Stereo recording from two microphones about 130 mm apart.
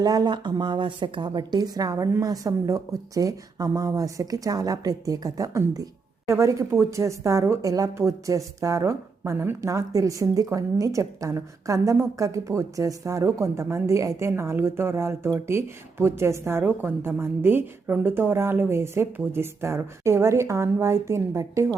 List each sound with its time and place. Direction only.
0.0 s a woman's voice: 30° right (ahead or behind)